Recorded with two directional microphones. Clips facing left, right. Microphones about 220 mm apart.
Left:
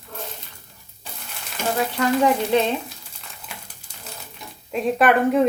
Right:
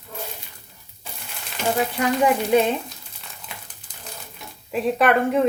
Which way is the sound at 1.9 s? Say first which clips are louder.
Left 3 dB; 15° right (ahead or behind).